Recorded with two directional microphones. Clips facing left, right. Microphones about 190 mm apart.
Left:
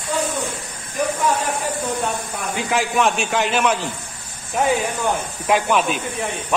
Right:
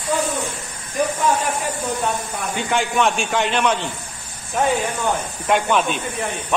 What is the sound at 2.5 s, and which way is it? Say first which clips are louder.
Speech: even; centre (ahead or behind).